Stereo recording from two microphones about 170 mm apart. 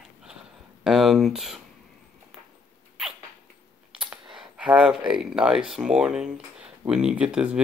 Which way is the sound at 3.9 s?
5° right (ahead or behind).